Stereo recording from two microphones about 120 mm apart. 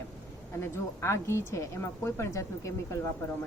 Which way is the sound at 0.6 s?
25° left (ahead or behind).